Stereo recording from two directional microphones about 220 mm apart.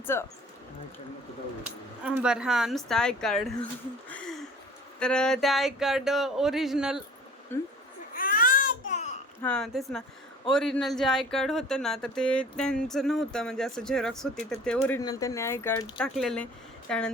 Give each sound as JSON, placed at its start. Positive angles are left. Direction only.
{"t": 0.0, "sound": "speech", "side_deg": 10}
{"t": 2.0, "sound": "speech", "side_deg": -5}
{"t": 4.1, "sound": "a sound", "side_deg": 5}
{"t": 4.9, "sound": "speech", "side_deg": 5}
{"t": 7.5, "sound": "speech", "side_deg": 10}
{"t": 8.1, "sound": "baby cry", "side_deg": 40}
{"t": 9.4, "sound": "speech", "side_deg": 5}